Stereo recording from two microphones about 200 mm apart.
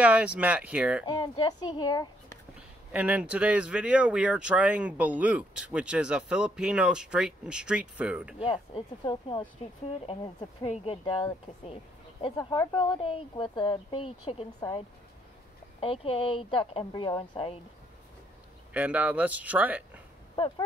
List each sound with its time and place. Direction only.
0.0 s speech: 5° right (ahead or behind)
1.0 s speech: 20° left (ahead or behind)
2.9 s speech: 5° right (ahead or behind)
8.4 s speech: 25° left (ahead or behind)
15.8 s speech: 30° left (ahead or behind)
18.7 s speech: 5° right (ahead or behind)
20.3 s speech: 25° left (ahead or behind)